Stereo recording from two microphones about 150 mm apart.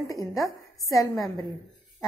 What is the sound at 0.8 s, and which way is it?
Speech, centre (ahead or behind).